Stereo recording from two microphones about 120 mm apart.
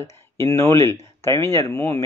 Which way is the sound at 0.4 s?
25° left (ahead or behind).